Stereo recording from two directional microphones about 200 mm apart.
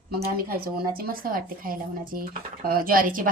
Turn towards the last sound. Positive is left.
turn(degrees=-45)  # may be behind; listen again after turning